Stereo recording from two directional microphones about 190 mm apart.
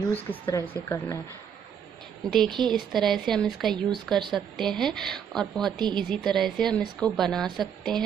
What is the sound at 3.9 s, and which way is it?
Speech, 25° right (ahead or behind).